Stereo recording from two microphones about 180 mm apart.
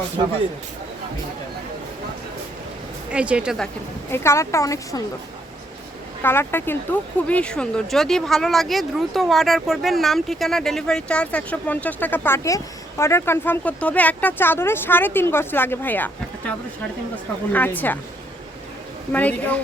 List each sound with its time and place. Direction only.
3.1 s a woman's voice: 5° right (ahead or behind)
4.1 s speech: 15° left (ahead or behind)
6.2 s speech: 10° left (ahead or behind)
17.5 s speech: 10° left (ahead or behind)
19.1 s speech: 10° left (ahead or behind)